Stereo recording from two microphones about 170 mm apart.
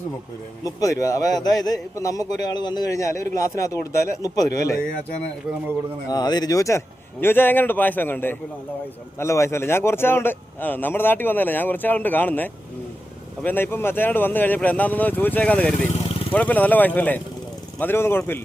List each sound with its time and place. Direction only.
0.6 s a man's voice: 20° left (ahead or behind)
6.1 s speech: 25° left (ahead or behind)